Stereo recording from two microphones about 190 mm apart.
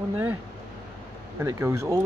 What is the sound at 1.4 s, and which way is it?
Speech, 15° right (ahead or behind).